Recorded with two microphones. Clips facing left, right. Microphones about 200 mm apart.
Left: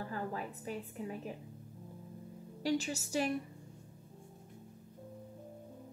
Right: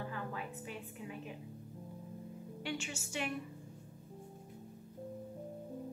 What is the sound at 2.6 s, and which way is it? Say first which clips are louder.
Speech: left 8 dB; 35° left (ahead or behind).